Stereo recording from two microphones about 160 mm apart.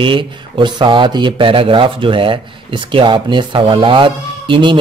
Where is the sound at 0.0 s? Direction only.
30° right (ahead or behind).